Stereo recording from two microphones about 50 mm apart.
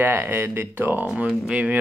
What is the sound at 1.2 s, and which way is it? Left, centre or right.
Speech, right.